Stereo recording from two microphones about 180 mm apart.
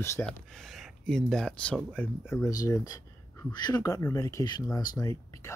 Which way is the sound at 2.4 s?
20° left (ahead or behind).